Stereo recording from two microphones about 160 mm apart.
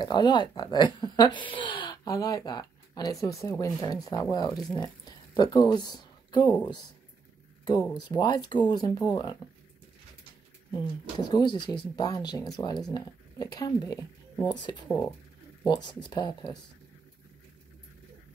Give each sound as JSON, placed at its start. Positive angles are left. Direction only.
{"t": 0.0, "sound": "speech", "side_deg": 25}
{"t": 8.1, "sound": "speech", "side_deg": 30}
{"t": 10.7, "sound": "speech", "side_deg": 25}